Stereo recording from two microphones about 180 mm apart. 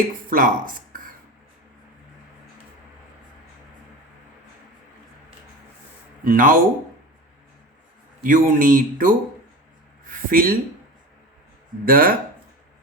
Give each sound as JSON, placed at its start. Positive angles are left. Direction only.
{"t": 0.3, "sound": "speech", "side_deg": -50}
{"t": 6.2, "sound": "speech", "side_deg": -50}
{"t": 8.2, "sound": "speech", "side_deg": -50}
{"t": 10.1, "sound": "a sound", "side_deg": -50}
{"t": 11.9, "sound": "speech", "side_deg": -50}